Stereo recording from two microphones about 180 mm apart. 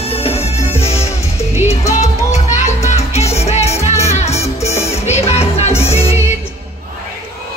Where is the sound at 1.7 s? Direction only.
40° left (ahead or behind).